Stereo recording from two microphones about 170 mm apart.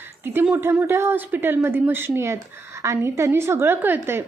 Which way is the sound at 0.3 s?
10° right (ahead or behind).